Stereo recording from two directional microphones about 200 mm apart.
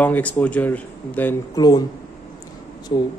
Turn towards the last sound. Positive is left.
turn(degrees=30)  # may be behind; listen again after turning